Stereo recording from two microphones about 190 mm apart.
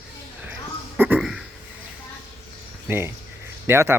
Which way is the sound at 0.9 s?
10° right (ahead or behind).